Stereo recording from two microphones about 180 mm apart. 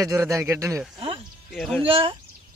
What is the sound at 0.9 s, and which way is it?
Music, 30° right (ahead or behind).